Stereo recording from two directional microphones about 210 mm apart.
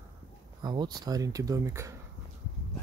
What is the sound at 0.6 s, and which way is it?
Speech, 20° right (ahead or behind).